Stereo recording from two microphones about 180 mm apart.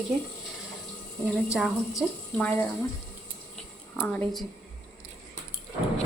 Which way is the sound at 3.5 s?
5° left (ahead or behind).